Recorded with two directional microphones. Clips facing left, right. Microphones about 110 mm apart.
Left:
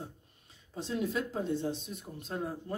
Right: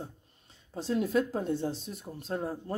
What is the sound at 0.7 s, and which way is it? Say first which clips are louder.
Speech: right 5 dB; 40° right (ahead or behind).